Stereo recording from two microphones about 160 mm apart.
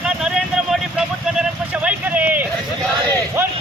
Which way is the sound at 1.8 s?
10° right (ahead or behind).